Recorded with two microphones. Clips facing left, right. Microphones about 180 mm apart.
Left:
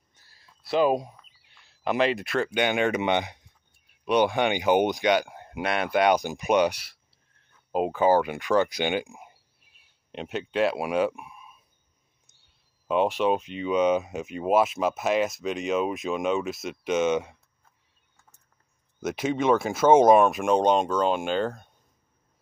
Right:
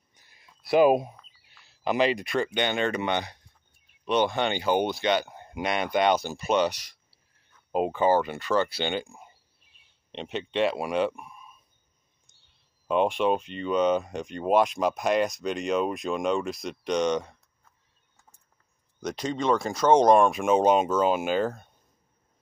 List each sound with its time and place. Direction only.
0.1 s a sound: 15° right (ahead or behind)
0.7 s speech: 15° right (ahead or behind)
1.5 s speech: centre (ahead or behind); by 9.3 s 15° left (ahead or behind)
10.1 s speech: centre (ahead or behind)
12.8 s speech: 5° left (ahead or behind)
18.9 s speech: 5° left (ahead or behind)